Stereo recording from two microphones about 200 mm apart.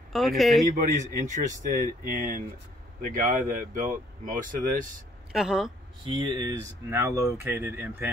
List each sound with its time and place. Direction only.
0.1 s speech: centre (ahead or behind)
0.9 s speech: 40° right (ahead or behind)
5.3 s speech: centre (ahead or behind)
6.0 s speech: 20° right (ahead or behind)